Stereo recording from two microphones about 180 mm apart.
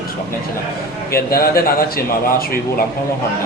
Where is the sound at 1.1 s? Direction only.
55° left (ahead or behind).